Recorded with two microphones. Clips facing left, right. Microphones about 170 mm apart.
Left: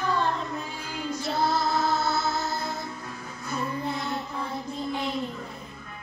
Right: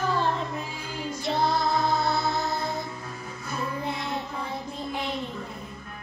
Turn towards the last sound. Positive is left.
turn(degrees=0)  # may be behind; listen again after turning